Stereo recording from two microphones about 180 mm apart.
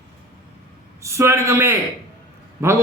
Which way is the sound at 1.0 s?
15° right (ahead or behind).